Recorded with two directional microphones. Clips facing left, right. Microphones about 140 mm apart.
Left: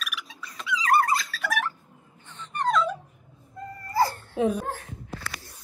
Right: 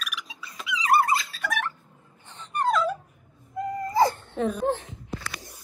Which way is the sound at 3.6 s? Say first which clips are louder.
Right 3 dB; 15° right (ahead or behind).